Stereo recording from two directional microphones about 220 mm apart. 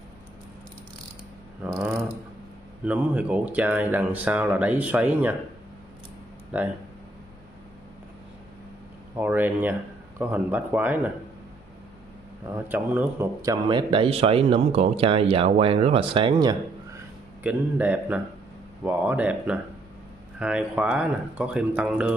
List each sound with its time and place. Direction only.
2.8 s speech: 5° right (ahead or behind)
6.5 s speech: 5° right (ahead or behind)
9.1 s speech: 10° right (ahead or behind)
12.5 s speech: 10° right (ahead or behind)
17.4 s a man's voice: 5° right (ahead or behind)